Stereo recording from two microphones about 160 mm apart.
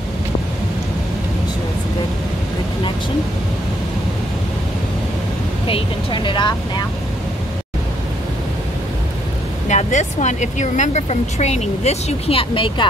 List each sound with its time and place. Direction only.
5.7 s speech: 30° left (ahead or behind)
9.7 s speech: 45° left (ahead or behind); by 12.8 s 30° left (ahead or behind)